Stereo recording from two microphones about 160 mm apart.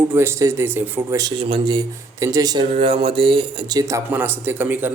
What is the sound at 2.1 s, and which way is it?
Speech, 20° right (ahead or behind).